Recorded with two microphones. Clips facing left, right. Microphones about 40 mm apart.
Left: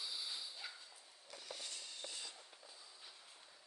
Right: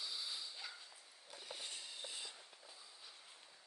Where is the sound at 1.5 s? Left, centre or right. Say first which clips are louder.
Right 1 dB; right.